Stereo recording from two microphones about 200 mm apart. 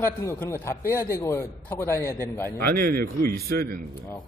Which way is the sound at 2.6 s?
50° right (ahead or behind).